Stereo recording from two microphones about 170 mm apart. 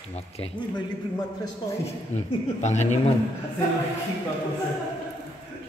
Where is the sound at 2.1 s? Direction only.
40° left (ahead or behind).